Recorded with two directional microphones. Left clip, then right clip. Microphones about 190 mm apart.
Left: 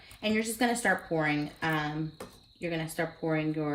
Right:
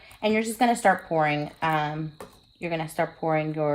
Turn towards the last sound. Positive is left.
turn(degrees=-45)  # may be behind; listen again after turning